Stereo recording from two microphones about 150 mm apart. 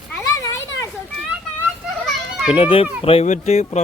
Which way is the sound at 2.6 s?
35° left (ahead or behind).